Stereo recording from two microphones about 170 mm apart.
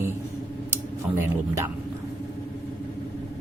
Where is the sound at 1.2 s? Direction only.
15° right (ahead or behind).